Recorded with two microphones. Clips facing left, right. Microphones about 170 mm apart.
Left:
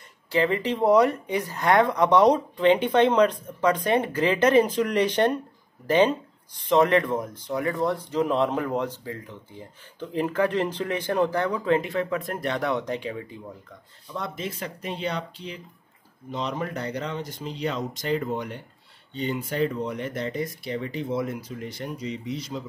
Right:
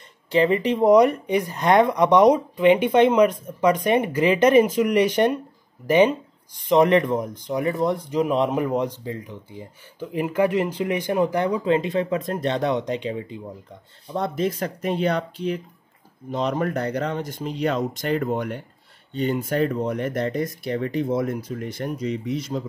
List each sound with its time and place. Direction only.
0.3 s speech: 20° right (ahead or behind)
14.1 s speech: 35° right (ahead or behind)